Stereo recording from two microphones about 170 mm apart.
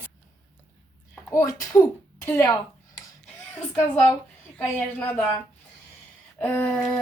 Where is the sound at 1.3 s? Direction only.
20° left (ahead or behind).